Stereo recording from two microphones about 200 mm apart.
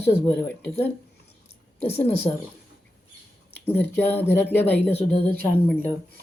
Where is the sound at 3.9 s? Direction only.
10° left (ahead or behind).